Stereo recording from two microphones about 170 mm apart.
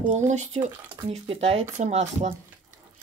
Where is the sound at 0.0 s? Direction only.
45° right (ahead or behind).